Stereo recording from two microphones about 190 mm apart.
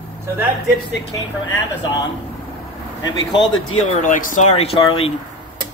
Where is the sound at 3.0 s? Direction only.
25° left (ahead or behind).